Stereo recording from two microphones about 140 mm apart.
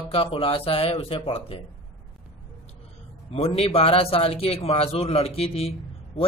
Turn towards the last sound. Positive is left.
turn(degrees=45)  # may be behind; listen again after turning